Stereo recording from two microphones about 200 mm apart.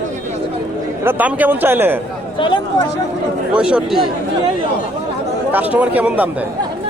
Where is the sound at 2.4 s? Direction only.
25° left (ahead or behind).